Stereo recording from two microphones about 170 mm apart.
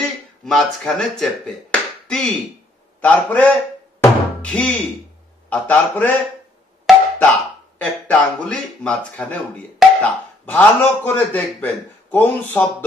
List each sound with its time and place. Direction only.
0.0 s a man's voice: 5° left (ahead or behind)
4.0 s music: 5° left (ahead or behind)
5.5 s a man's voice: 10° left (ahead or behind)
7.2 s speech: 5° left (ahead or behind)